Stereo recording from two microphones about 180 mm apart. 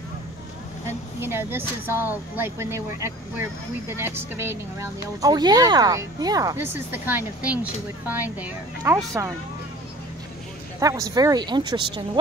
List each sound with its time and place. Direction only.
0.8 s speech: 15° right (ahead or behind)
10.8 s speech: 20° right (ahead or behind)